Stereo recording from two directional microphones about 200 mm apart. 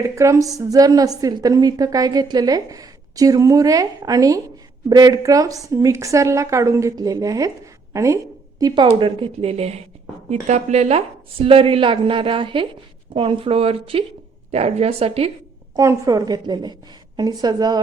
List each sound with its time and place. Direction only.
0.2 s a woman's voice: 15° right (ahead or behind)
15.7 s a woman's voice: 15° right (ahead or behind)